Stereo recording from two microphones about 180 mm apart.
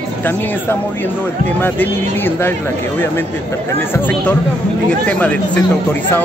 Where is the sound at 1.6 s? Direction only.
10° left (ahead or behind).